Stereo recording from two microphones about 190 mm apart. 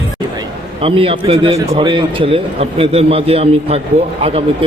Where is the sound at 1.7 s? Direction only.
25° right (ahead or behind).